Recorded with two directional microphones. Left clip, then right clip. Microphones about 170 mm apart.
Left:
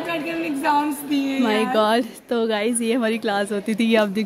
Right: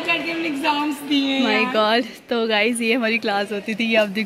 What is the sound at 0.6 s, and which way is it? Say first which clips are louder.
A woman's voice: left 3 dB; 15° left (ahead or behind).